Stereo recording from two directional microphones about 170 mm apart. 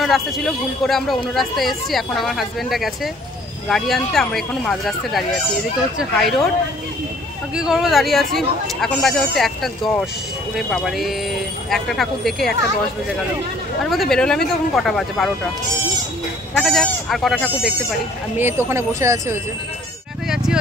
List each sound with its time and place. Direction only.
0.0 s speech: centre (ahead or behind)
7.5 s speech: 5° right (ahead or behind)
13.8 s speech: centre (ahead or behind)
16.5 s speech: 5° left (ahead or behind)
18.4 s speech: 15° right (ahead or behind)